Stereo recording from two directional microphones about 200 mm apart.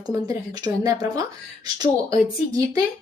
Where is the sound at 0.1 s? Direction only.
20° right (ahead or behind).